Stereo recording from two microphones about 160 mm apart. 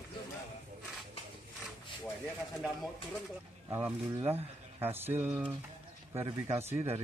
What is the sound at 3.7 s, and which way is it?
Speech, 15° right (ahead or behind).